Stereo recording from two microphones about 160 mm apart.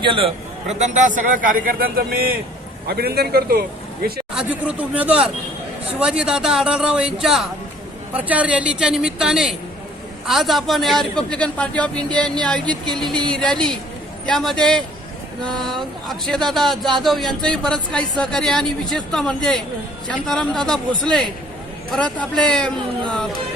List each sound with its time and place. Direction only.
0.0 s a man's voice: 35° right (ahead or behind); by 2.3 s 70° right (ahead or behind)
2.8 s speech: 80° right
4.4 s a man's voice: 10° right (ahead or behind)